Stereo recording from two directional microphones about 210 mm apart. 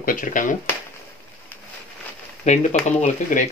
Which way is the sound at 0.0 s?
40° left (ahead or behind).